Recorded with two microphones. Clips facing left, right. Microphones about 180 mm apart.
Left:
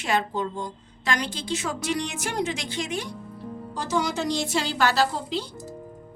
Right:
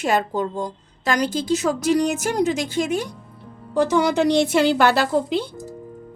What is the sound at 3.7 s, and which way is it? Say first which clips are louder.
A woman's voice: right 9 dB; 60° right (ahead or behind).